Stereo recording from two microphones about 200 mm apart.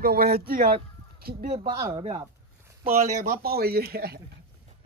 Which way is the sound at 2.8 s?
45° right (ahead or behind).